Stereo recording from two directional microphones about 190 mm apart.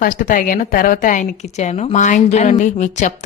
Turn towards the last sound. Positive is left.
turn(degrees=40)  # may be behind; listen again after turning